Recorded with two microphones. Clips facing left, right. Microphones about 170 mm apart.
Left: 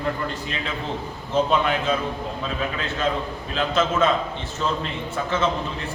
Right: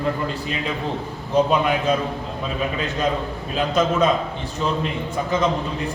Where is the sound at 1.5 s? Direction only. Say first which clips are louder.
Right 2 dB; 10° right (ahead or behind).